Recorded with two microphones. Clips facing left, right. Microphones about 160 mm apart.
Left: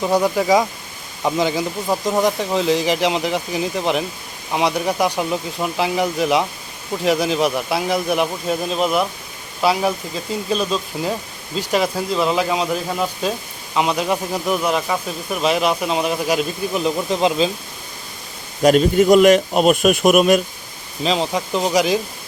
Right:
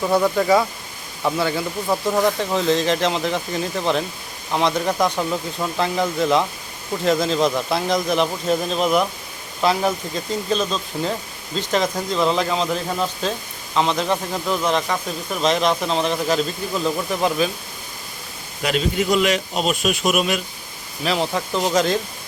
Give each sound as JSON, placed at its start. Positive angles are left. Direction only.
{"t": 0.0, "sound": "speech", "side_deg": 15}
{"t": 18.6, "sound": "speech", "side_deg": 45}
{"t": 21.0, "sound": "speech", "side_deg": 20}